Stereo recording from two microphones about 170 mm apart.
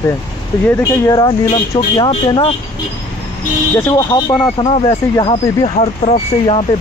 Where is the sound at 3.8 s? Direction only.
20° left (ahead or behind).